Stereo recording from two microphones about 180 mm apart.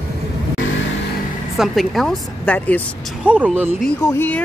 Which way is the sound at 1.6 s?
Centre (ahead or behind).